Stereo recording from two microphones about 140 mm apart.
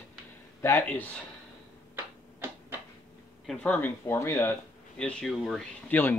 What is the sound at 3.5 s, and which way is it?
Speech, 10° left (ahead or behind).